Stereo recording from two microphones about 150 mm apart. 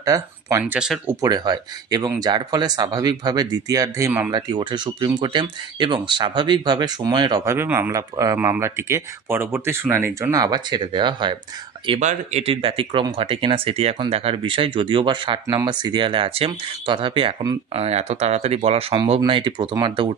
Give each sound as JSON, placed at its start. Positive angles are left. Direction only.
{"t": 0.0, "sound": "speech", "side_deg": -25}
{"t": 0.6, "sound": "speech", "side_deg": -10}
{"t": 1.2, "sound": "speech", "side_deg": -25}
{"t": 7.4, "sound": "speech", "side_deg": -15}
{"t": 10.4, "sound": "speech", "side_deg": -30}
{"t": 12.0, "sound": "speech", "side_deg": -50}
{"t": 17.7, "sound": "speech", "side_deg": -45}